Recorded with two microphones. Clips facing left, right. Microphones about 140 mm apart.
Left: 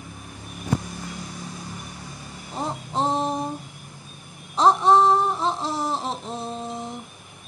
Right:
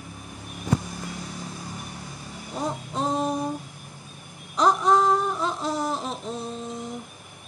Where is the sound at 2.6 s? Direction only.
30° left (ahead or behind).